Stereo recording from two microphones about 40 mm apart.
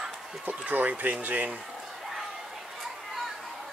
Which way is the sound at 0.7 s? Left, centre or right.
Right.